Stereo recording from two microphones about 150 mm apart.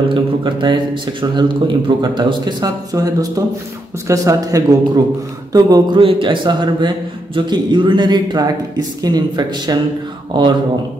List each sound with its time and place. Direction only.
0.1 s speech: 30° right (ahead or behind)